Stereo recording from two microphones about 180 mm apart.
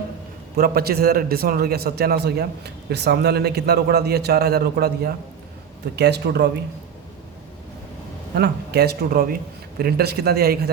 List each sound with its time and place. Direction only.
0.5 s a man's voice: 55° right (ahead or behind)
8.4 s a man's voice: 65° right (ahead or behind)